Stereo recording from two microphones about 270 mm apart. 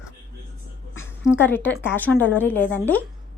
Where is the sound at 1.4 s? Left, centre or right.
Centre.